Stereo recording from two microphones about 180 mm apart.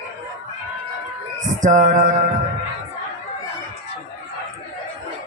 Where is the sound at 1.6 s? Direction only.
45° right (ahead or behind).